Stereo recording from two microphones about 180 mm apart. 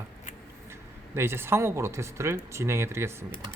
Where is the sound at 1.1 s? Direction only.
15° right (ahead or behind).